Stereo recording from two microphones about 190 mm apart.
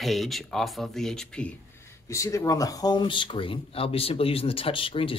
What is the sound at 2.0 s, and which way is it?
Speech, 15° left (ahead or behind).